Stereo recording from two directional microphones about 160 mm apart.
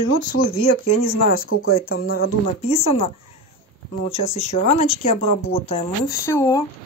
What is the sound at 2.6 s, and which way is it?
Speech, 40° left (ahead or behind).